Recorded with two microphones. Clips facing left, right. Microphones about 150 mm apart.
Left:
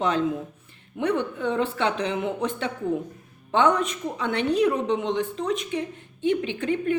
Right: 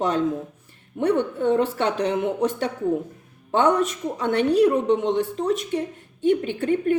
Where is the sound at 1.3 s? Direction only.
40° right (ahead or behind).